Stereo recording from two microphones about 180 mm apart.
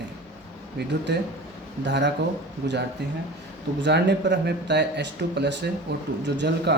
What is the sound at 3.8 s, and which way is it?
Speech, 75° right (ahead or behind).